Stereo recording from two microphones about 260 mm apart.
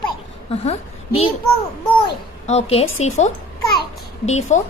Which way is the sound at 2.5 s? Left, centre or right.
Left.